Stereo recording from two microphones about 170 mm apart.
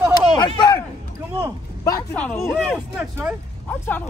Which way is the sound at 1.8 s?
20° left (ahead or behind).